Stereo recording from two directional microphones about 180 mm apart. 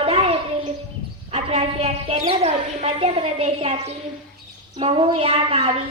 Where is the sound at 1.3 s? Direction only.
35° right (ahead or behind).